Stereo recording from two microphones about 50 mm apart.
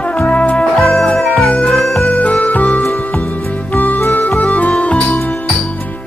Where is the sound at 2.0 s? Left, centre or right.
Left.